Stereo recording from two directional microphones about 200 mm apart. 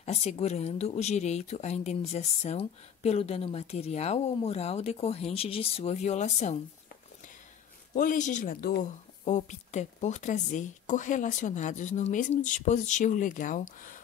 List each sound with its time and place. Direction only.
0.0 s speech: 30° left (ahead or behind)
7.9 s speech: 45° left (ahead or behind)
9.2 s speech: 35° left (ahead or behind)